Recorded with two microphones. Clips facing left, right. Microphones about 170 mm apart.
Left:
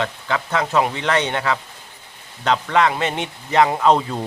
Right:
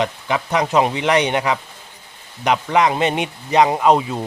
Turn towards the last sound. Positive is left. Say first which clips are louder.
# right 1 dB
turn(degrees=-10)  # may be behind; listen again after turning